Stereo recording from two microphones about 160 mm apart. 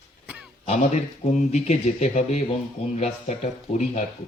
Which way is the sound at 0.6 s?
45° left (ahead or behind).